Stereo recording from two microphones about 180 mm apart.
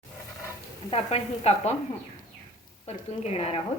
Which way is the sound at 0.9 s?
35° left (ahead or behind).